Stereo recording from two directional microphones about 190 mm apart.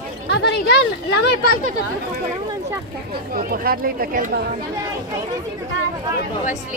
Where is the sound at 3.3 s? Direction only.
50° right (ahead or behind).